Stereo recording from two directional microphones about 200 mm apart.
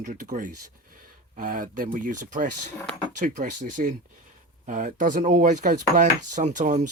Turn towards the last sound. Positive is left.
turn(degrees=-40)  # may be behind; listen again after turning